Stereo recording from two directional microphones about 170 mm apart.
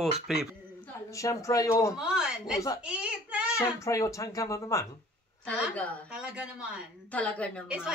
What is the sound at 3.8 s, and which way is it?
Speech, 20° left (ahead or behind).